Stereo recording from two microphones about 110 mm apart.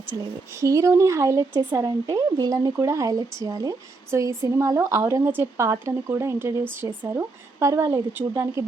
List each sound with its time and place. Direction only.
0.1 s speech: 25° right (ahead or behind)